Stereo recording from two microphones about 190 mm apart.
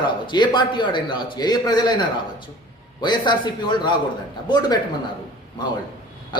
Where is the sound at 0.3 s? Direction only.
25° left (ahead or behind).